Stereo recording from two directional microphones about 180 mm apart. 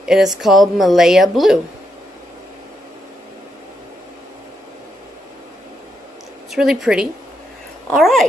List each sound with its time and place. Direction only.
0.0 s a woman's voice: 5° right (ahead or behind)
6.5 s a woman's voice: 5° right (ahead or behind)